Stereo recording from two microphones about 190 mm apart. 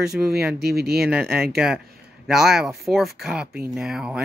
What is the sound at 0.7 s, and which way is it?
Speech, 55° right (ahead or behind).